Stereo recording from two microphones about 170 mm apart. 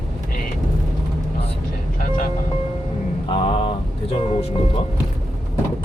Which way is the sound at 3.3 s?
35° left (ahead or behind).